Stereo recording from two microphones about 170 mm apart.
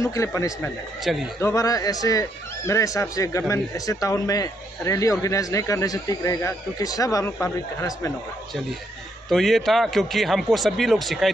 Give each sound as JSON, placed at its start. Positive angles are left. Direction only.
{"t": 0.0, "sound": "speech", "side_deg": 20}
{"t": 1.1, "sound": "a man's voice", "side_deg": 0}
{"t": 1.4, "sound": "speech", "side_deg": 20}
{"t": 9.3, "sound": "a man's voice", "side_deg": 0}